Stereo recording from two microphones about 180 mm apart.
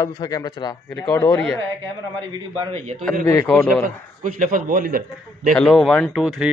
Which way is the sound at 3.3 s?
5° left (ahead or behind).